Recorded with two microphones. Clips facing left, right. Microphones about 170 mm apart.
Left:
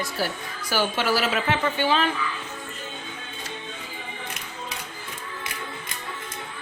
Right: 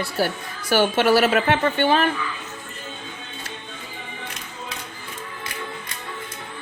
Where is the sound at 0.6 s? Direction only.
60° right (ahead or behind).